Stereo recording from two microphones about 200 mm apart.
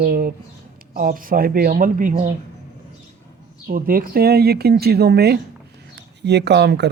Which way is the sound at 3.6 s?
45° right (ahead or behind).